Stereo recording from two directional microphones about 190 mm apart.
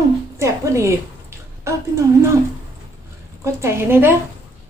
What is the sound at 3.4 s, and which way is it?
Speech, 15° right (ahead or behind).